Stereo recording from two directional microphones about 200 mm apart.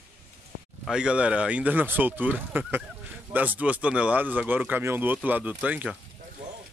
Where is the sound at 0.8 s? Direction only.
5° right (ahead or behind).